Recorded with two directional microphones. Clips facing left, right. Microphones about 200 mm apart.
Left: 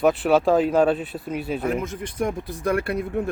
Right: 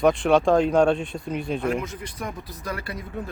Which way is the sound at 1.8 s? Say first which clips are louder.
Left 6 dB; 50° left (ahead or behind).